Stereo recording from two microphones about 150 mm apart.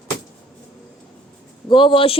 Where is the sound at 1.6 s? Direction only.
35° left (ahead or behind).